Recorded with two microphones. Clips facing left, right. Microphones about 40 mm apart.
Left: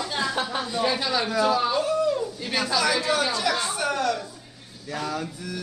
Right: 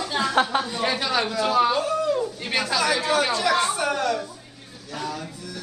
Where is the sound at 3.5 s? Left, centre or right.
Right.